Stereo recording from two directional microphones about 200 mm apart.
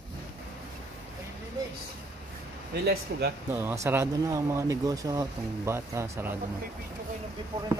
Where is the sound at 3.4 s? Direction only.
10° right (ahead or behind).